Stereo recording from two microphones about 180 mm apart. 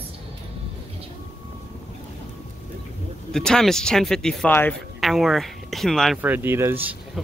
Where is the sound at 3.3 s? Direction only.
5° left (ahead or behind).